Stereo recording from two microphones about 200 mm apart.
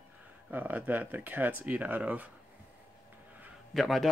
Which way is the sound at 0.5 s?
10° right (ahead or behind).